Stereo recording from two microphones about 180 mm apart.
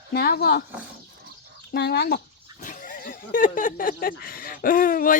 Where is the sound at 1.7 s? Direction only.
65° left (ahead or behind).